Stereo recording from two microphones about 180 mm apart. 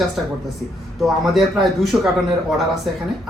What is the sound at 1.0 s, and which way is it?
A woman's voice, centre (ahead or behind).